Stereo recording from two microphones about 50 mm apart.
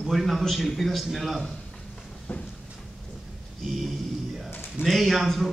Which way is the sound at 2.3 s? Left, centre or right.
Left.